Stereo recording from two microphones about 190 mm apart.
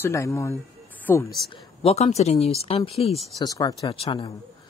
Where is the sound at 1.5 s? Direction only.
30° left (ahead or behind).